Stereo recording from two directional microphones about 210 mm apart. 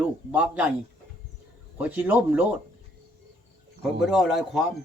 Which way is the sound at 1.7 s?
10° right (ahead or behind).